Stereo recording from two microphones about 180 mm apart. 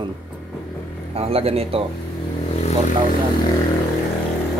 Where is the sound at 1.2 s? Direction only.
35° right (ahead or behind).